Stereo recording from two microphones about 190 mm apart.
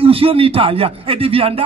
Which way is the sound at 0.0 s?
30° right (ahead or behind).